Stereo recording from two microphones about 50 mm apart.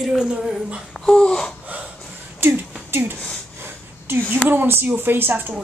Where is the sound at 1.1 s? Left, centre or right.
Centre.